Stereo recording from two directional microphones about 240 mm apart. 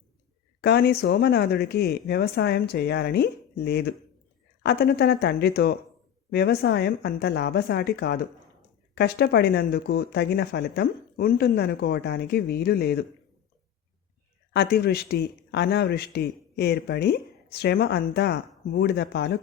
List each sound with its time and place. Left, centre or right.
0.6 s a man's voice: left
14.5 s a man's voice: left